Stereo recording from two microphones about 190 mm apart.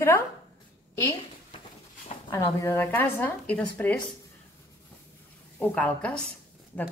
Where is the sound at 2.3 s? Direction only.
15° left (ahead or behind).